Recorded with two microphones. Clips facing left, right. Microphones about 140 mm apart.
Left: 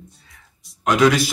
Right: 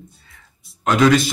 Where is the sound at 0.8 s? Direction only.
10° left (ahead or behind).